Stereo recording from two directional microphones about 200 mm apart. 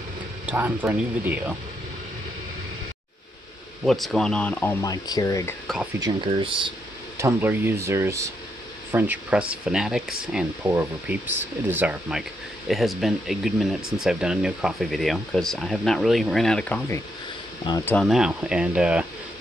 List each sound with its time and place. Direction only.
0.5 s speech: 10° right (ahead or behind)
3.8 s speech: centre (ahead or behind)
5.9 s speech: 20° right (ahead or behind)
7.2 s speech: 10° right (ahead or behind); by 17.0 s 5° left (ahead or behind)
17.6 s speech: 15° left (ahead or behind)
17.9 s speech: centre (ahead or behind)